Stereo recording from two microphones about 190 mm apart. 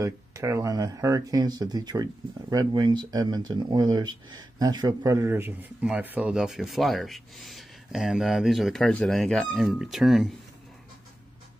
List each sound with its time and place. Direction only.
0.0 s speech: 15° right (ahead or behind)